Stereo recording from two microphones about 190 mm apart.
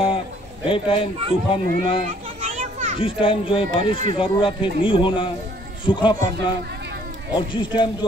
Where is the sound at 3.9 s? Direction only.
40° right (ahead or behind).